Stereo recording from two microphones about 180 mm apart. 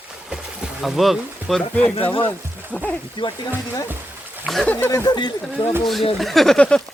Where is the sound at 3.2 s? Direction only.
25° left (ahead or behind).